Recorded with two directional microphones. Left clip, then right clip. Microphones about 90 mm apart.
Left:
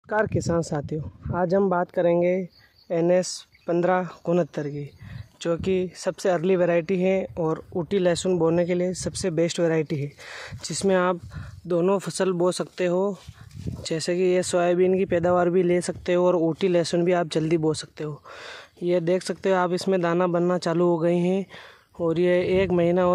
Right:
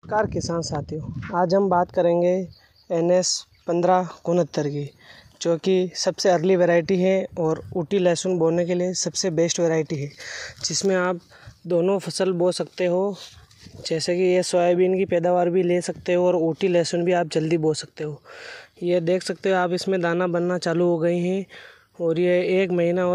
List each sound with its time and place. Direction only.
0.1 s speech: 50° left (ahead or behind)
1.3 s speech: 20° left (ahead or behind)
4.4 s speech: 5° right (ahead or behind)
8.4 s speech: 20° left (ahead or behind); by 10.1 s 35° left (ahead or behind)
10.2 s speech: 15° left (ahead or behind)